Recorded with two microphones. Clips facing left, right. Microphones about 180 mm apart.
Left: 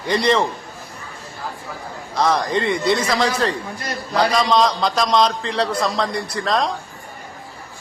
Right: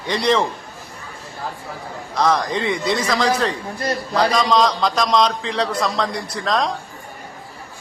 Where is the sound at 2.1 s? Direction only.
Centre (ahead or behind).